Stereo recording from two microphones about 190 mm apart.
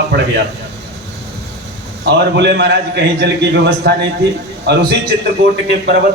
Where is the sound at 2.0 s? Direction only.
60° right (ahead or behind).